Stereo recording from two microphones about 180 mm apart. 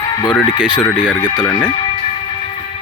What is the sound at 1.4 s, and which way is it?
Speech, 15° left (ahead or behind).